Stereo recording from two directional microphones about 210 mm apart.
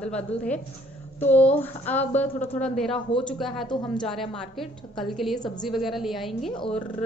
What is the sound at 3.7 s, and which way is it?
Speech, 20° left (ahead or behind).